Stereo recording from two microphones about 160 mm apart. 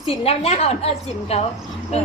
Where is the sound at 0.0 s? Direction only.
40° left (ahead or behind).